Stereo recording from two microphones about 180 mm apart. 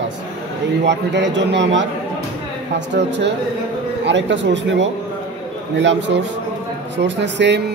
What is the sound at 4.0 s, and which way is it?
A man's voice, 85° right.